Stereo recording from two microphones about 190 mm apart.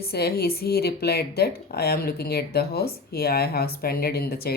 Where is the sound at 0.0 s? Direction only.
55° left (ahead or behind).